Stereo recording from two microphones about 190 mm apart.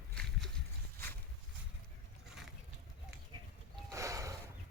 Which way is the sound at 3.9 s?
15° right (ahead or behind).